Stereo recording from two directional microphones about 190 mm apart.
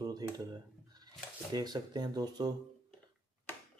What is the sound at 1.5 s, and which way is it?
Speech, 20° right (ahead or behind).